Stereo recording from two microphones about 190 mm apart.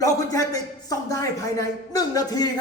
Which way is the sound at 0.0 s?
20° left (ahead or behind).